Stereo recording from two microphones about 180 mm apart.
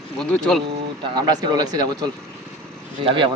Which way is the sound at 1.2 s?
20° right (ahead or behind).